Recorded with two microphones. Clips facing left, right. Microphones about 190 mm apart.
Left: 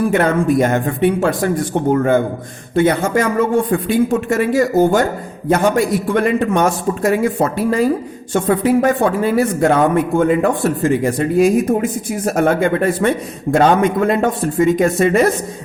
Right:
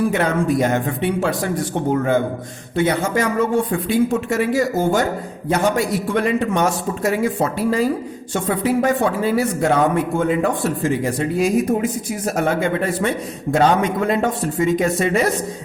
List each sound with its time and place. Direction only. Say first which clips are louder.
0.1 s speech: left 4 dB; 55° left (ahead or behind)